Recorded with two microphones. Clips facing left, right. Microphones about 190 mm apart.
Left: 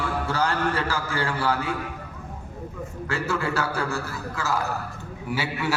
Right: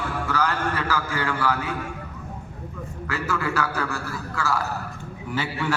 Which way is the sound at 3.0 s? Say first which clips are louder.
Even; 25° left (ahead or behind).